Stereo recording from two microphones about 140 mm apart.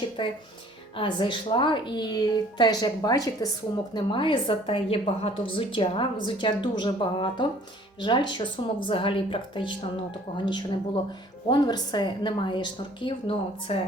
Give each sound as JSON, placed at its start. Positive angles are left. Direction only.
{"t": 0.2, "sound": "a woman's voice", "side_deg": 35}
{"t": 3.9, "sound": "a woman's voice", "side_deg": 35}